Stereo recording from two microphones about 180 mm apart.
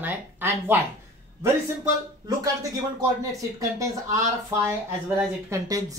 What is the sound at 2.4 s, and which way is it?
Speech, 20° right (ahead or behind).